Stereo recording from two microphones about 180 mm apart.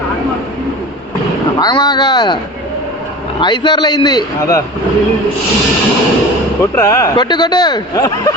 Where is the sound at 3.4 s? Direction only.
25° left (ahead or behind).